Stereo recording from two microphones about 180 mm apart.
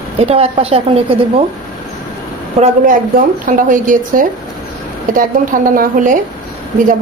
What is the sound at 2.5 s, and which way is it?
A woman's voice, 45° right (ahead or behind).